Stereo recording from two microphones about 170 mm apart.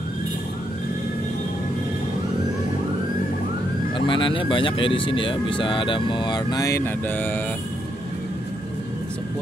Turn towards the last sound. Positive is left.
turn(degrees=10)  # may be behind; listen again after turning